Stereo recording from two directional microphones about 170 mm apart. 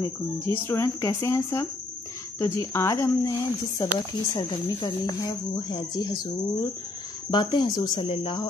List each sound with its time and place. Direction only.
0.7 s a woman's voice: 15° left (ahead or behind)